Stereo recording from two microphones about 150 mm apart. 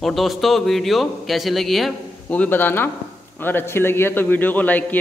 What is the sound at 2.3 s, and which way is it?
A man's voice, 10° left (ahead or behind).